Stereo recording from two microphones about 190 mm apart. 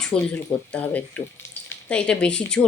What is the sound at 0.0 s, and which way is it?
Speech, 5° left (ahead or behind).